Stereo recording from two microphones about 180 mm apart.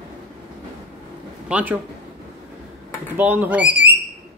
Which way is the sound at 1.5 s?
10° right (ahead or behind).